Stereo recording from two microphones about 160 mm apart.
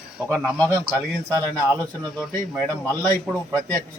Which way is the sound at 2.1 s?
Centre (ahead or behind).